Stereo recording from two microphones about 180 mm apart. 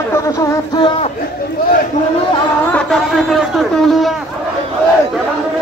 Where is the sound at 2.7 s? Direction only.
Centre (ahead or behind).